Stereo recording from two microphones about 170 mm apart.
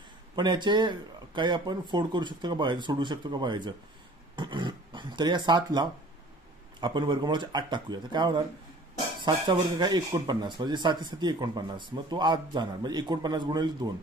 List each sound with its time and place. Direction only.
0.4 s speech: 25° right (ahead or behind)
4.4 s dog: 25° right (ahead or behind)
6.8 s speech: 25° right (ahead or behind)